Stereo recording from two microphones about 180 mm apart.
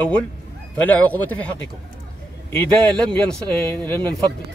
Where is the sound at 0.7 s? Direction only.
10° left (ahead or behind).